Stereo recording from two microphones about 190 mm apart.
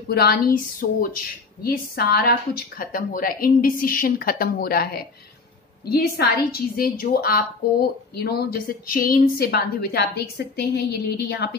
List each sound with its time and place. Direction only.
0.1 s a woman's voice: 55° left (ahead or behind)